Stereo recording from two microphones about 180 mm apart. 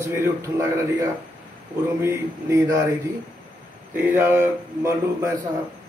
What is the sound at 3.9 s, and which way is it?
A man's voice, 10° right (ahead or behind).